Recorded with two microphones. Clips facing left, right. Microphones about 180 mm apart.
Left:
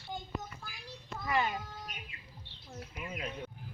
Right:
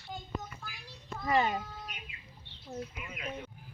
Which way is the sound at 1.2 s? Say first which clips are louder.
Right 4 dB; 30° right (ahead or behind).